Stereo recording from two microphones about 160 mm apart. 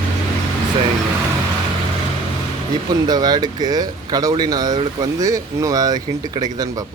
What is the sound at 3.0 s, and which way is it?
Speech, 25° right (ahead or behind).